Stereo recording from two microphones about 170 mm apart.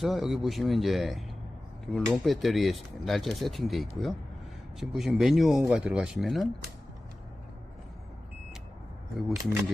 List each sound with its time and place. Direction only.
0.0 s speech: centre (ahead or behind)
9.3 s speech: 15° right (ahead or behind)